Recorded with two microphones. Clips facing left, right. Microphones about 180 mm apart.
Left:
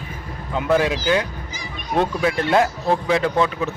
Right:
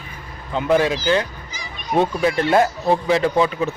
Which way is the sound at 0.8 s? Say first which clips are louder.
Right 1 dB; 10° left (ahead or behind).